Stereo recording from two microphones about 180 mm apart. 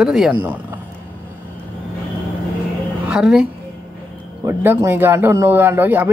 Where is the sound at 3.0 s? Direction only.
5° right (ahead or behind).